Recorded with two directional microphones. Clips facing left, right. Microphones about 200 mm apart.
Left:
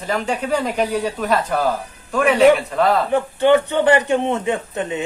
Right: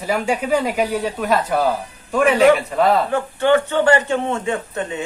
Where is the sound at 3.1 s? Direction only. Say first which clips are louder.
Left 2 dB; 15° left (ahead or behind).